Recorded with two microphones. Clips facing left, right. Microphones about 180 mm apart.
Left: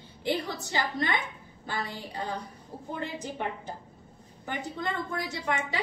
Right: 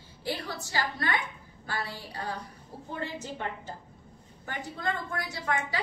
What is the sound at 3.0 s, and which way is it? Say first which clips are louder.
Speech: left 1 dB; 15° left (ahead or behind).